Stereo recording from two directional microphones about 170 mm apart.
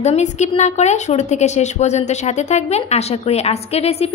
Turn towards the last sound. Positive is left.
turn(degrees=35)  # may be behind; listen again after turning